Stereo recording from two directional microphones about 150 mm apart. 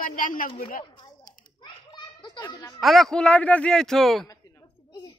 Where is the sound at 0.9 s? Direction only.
30° left (ahead or behind).